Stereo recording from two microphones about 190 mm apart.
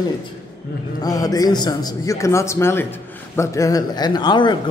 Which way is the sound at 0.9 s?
20° left (ahead or behind).